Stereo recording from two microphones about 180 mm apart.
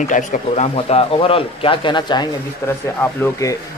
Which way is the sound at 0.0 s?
45° left (ahead or behind).